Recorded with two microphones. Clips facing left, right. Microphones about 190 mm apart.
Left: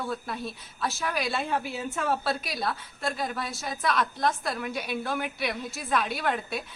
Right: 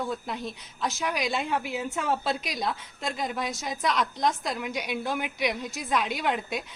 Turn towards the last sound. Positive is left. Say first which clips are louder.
# right 1 dB
turn(degrees=-15)  # may be behind; listen again after turning